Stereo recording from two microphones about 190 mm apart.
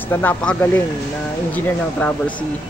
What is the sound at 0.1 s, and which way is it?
Speech, 10° left (ahead or behind).